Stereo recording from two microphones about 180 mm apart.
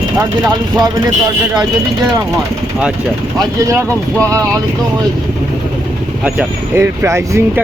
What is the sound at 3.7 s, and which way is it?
Speech, 15° right (ahead or behind).